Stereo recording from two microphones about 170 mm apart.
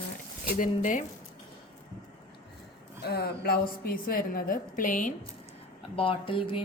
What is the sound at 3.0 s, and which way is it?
A woman's voice, 70° left (ahead or behind).